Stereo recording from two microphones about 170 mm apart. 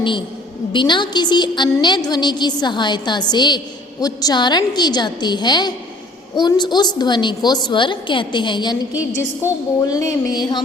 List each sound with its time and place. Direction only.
0.7 s a woman's voice: 25° left (ahead or behind)
9.8 s a woman's voice: 20° left (ahead or behind)